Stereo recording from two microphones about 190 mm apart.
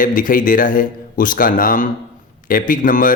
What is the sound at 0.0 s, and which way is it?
Speech, 45° left (ahead or behind).